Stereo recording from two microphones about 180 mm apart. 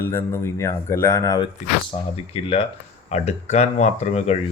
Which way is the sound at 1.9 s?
35° left (ahead or behind).